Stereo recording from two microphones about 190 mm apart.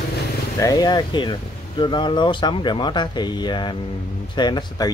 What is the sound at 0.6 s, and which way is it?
Speech, 20° left (ahead or behind).